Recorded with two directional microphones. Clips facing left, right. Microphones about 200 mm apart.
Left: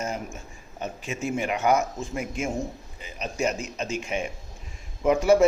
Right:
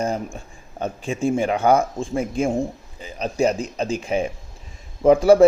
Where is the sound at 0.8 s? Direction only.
30° right (ahead or behind).